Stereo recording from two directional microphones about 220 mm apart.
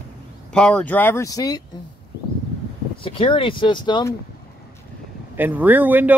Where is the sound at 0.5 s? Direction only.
5° left (ahead or behind).